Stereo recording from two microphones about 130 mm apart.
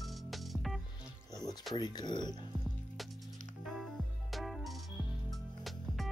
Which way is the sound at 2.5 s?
10° right (ahead or behind).